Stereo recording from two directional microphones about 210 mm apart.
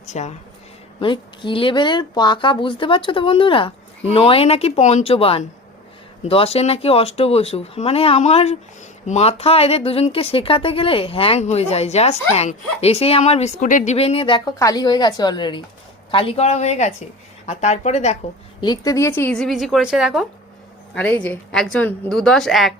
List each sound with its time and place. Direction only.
0.1 s a woman's voice: 35° left (ahead or behind)
1.0 s a woman's voice: 25° left (ahead or behind)
18.6 s a woman's voice: 20° left (ahead or behind); by 22.7 s centre (ahead or behind)